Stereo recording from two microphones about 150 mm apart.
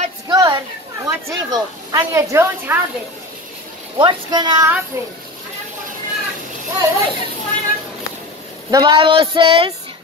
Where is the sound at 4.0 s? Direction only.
30° right (ahead or behind).